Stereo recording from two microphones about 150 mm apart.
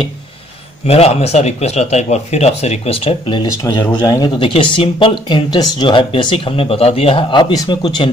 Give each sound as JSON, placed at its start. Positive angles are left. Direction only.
{"t": 0.8, "sound": "speech", "side_deg": 45}